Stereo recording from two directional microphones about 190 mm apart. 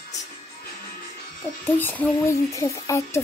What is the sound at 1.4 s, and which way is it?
Music, 10° left (ahead or behind).